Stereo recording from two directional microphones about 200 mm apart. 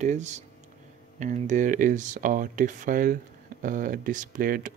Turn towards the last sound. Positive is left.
turn(degrees=-40)  # may be behind; listen again after turning